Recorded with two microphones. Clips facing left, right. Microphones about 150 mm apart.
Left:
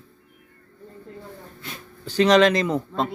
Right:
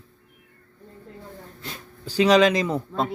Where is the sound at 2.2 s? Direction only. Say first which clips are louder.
Left 1 dB; 5° right (ahead or behind).